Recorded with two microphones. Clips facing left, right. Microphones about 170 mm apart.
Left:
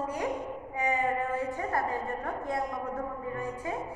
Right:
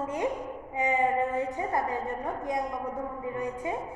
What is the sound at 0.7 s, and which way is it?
A woman's voice, 20° right (ahead or behind).